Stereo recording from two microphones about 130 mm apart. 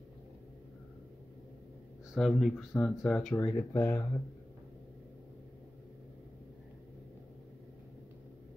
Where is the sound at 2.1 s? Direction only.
5° right (ahead or behind).